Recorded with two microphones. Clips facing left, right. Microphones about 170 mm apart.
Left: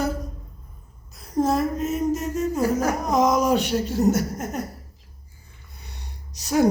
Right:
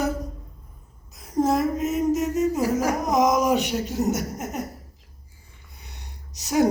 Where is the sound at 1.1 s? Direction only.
15° right (ahead or behind).